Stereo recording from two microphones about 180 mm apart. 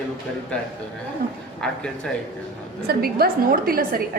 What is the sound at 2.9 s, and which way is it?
A woman's voice, 60° right (ahead or behind).